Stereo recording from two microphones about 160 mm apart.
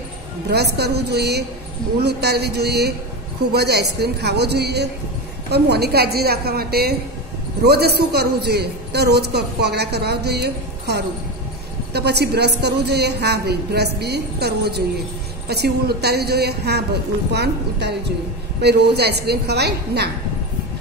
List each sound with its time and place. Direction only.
0.5 s a woman's voice: 90° right